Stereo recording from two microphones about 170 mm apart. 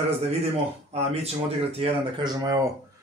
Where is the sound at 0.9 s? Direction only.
40° right (ahead or behind); by 2.7 s 20° right (ahead or behind).